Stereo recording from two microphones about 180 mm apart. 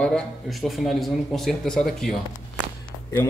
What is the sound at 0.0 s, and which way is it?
Speech, centre (ahead or behind).